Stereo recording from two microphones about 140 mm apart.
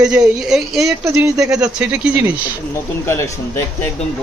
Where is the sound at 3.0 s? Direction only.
20° left (ahead or behind).